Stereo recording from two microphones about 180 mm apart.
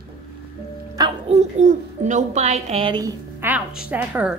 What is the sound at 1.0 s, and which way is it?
Speech, 20° right (ahead or behind).